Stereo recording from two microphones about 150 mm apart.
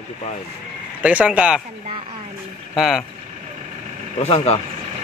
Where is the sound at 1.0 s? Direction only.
10° right (ahead or behind).